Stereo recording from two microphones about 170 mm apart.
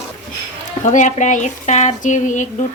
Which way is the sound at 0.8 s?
45° left (ahead or behind).